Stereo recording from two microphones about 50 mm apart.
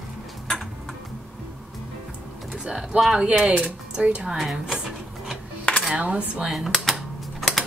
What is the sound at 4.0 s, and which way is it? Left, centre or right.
Speech, right.